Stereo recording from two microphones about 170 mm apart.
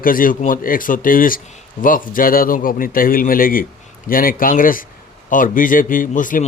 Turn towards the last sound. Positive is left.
turn(degrees=50)  # may be behind; listen again after turning